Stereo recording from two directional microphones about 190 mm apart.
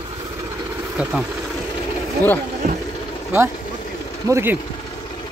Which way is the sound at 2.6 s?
45° right (ahead or behind).